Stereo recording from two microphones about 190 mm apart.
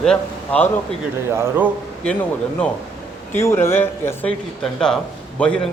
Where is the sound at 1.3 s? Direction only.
15° right (ahead or behind).